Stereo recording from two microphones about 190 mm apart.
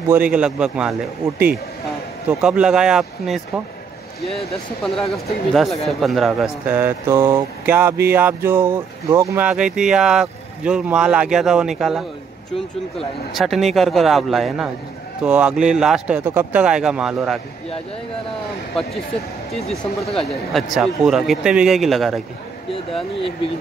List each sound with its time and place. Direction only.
0.1 s speech: 5° right (ahead or behind)
2.4 s speech: 5° right (ahead or behind)
19.8 s speech: 30° left (ahead or behind)
20.2 s speech: centre (ahead or behind)